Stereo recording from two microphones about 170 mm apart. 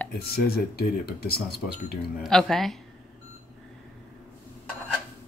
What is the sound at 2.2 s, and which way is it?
Speech, 5° left (ahead or behind).